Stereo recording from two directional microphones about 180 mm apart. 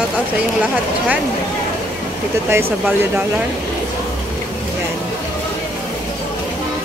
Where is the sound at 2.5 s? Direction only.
10° right (ahead or behind).